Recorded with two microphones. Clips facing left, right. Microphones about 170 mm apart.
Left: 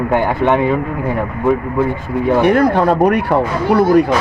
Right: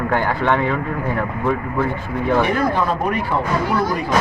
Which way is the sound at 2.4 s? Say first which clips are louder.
Left 7 dB; 65° left (ahead or behind).